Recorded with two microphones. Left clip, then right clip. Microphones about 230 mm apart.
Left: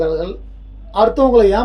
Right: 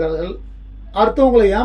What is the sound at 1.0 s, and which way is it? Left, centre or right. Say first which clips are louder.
Speech: left 1 dB; centre.